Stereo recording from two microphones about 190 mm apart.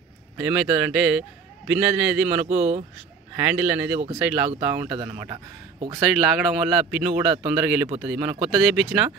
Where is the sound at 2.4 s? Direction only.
35° right (ahead or behind).